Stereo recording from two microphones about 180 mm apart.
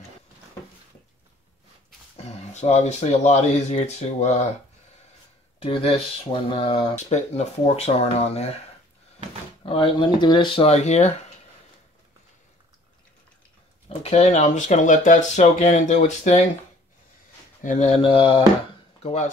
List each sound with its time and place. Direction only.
2.1 s speech: 35° left (ahead or behind)
5.6 s speech: 30° left (ahead or behind)
9.6 s speech: 30° left (ahead or behind)
13.8 s speech: 40° left (ahead or behind)
17.6 s speech: 40° left (ahead or behind)
19.0 s speech: 40° left (ahead or behind)